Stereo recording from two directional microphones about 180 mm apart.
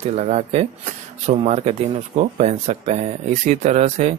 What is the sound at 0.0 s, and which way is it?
Speech, 35° right (ahead or behind).